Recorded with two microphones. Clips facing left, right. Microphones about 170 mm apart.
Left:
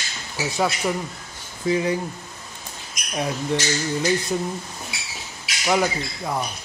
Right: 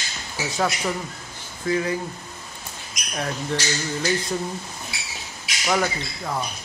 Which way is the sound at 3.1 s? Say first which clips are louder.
Left 3 dB; 15° left (ahead or behind).